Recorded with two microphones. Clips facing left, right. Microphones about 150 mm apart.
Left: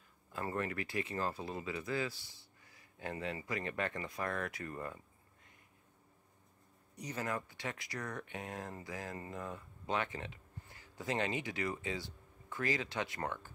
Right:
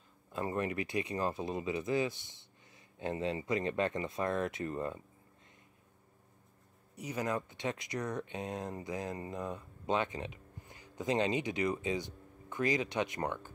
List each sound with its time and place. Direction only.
0.3 s speech: 20° right (ahead or behind)
7.0 s speech: 10° right (ahead or behind)